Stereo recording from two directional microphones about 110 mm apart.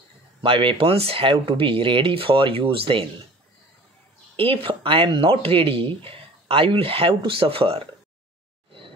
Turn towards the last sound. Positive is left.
turn(degrees=-60)  # may be behind; listen again after turning